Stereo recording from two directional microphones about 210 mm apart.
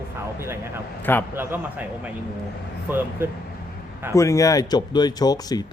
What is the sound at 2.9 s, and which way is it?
Speech, 10° right (ahead or behind).